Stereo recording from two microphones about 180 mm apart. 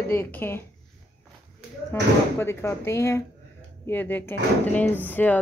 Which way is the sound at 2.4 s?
15° left (ahead or behind).